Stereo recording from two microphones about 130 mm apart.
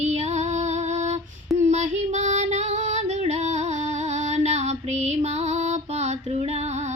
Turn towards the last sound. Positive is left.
turn(degrees=-60)  # may be behind; listen again after turning